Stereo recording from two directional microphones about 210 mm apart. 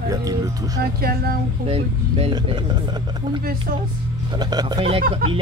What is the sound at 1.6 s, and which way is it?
Speech, 30° right (ahead or behind).